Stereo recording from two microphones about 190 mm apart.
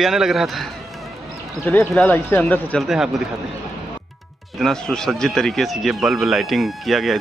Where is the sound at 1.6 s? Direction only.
10° left (ahead or behind).